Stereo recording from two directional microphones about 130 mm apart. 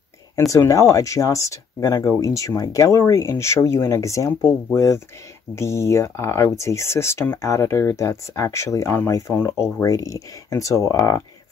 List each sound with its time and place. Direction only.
0.5 s speech: 25° left (ahead or behind)